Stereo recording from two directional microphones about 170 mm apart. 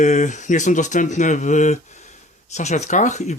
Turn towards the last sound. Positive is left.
turn(degrees=45)  # may be behind; listen again after turning